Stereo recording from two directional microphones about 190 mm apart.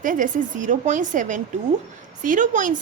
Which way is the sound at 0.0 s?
45° right (ahead or behind).